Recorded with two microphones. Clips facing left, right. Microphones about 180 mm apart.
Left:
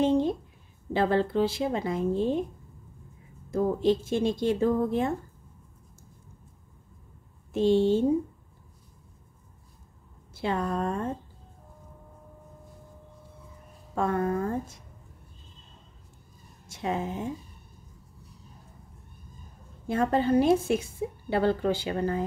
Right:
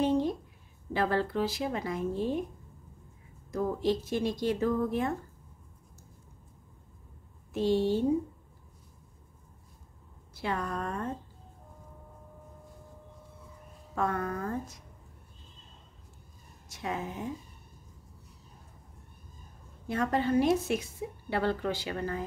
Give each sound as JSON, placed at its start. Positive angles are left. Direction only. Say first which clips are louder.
{"t": 0.0, "sound": "a sound", "louder": "left 4 dB", "side_deg": 25}
{"t": 0.9, "sound": "a woman's voice", "louder": "left 4 dB", "side_deg": 25}
{"t": 3.4, "sound": "a woman's voice", "louder": "left 5 dB", "side_deg": 25}
{"t": 7.5, "sound": "a woman's voice", "louder": "left 5 dB", "side_deg": 25}
{"t": 10.3, "sound": "a woman's voice", "louder": "left 5 dB", "side_deg": 25}
{"t": 13.9, "sound": "a woman's voice", "louder": "left 5 dB", "side_deg": 25}
{"t": 16.6, "sound": "a woman's voice", "louder": "left 5 dB", "side_deg": 25}
{"t": 19.9, "sound": "a woman's voice", "louder": "left 4 dB", "side_deg": 30}